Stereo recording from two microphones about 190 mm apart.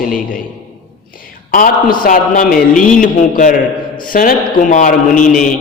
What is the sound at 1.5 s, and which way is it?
A man's voice, 50° left (ahead or behind).